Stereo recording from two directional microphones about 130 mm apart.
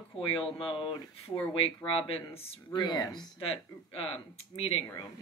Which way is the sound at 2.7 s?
35° left (ahead or behind).